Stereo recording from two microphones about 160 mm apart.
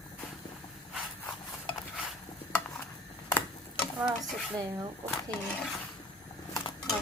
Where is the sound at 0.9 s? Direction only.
5° left (ahead or behind).